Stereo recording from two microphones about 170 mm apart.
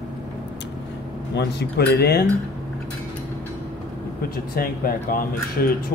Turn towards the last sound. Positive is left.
turn(degrees=60)  # may be behind; listen again after turning